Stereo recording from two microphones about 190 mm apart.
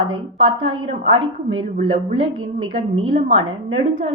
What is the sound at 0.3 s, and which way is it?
Speech, 30° right (ahead or behind).